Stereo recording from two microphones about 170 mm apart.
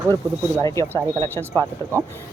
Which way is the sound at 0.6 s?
15° left (ahead or behind).